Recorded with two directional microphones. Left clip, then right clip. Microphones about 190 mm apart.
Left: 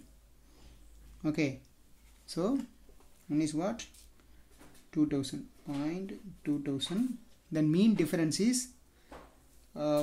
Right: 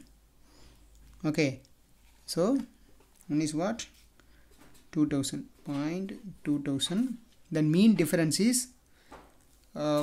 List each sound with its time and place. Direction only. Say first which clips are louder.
1.2 s speech: right 4 dB; 30° right (ahead or behind)
4.9 s speech: right 2 dB; 35° right (ahead or behind)
9.7 s speech: right 2 dB; 35° right (ahead or behind)